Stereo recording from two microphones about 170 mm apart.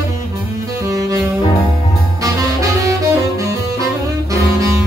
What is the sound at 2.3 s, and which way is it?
Music, 20° right (ahead or behind).